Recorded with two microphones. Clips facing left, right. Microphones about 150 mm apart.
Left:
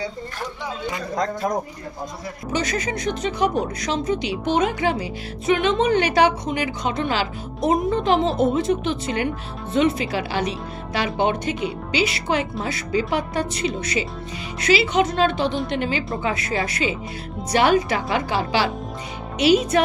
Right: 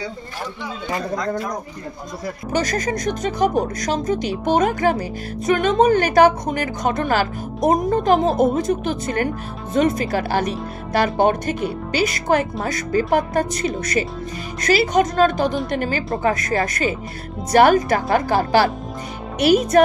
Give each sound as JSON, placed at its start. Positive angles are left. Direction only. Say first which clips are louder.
{"t": 2.5, "sound": "speech", "louder": "right 3 dB", "side_deg": -45}